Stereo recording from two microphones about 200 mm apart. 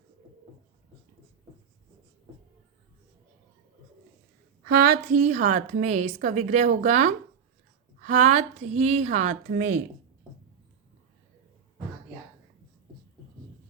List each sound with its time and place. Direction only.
4.7 s a woman's voice: 45° right (ahead or behind)